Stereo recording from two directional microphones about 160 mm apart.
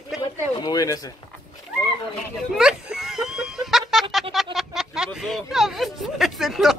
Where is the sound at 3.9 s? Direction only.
Centre (ahead or behind).